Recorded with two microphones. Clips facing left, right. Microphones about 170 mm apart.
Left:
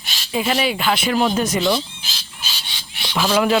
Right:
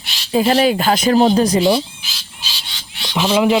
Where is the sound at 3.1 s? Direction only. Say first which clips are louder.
Right 3 dB; 20° right (ahead or behind).